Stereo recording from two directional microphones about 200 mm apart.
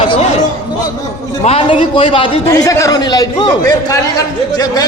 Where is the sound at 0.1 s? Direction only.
35° left (ahead or behind).